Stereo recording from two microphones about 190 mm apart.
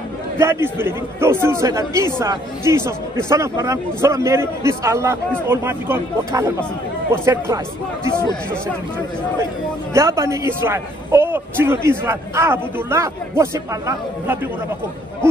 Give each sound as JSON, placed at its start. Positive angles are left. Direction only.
{"t": 0.4, "sound": "a man's voice", "side_deg": -15}
{"t": 9.9, "sound": "a man's voice", "side_deg": -15}